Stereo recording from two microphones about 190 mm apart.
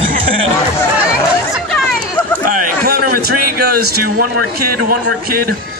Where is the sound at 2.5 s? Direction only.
50° right (ahead or behind).